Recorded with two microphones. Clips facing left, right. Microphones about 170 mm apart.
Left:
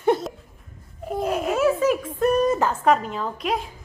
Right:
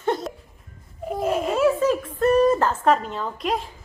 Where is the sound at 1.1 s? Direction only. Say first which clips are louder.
Right 1 dB; centre (ahead or behind).